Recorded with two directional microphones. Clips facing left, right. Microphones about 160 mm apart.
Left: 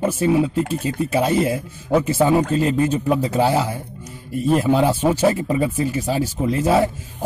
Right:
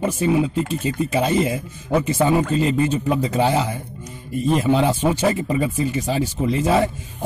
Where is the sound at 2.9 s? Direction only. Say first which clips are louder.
Left 1 dB; 5° left (ahead or behind).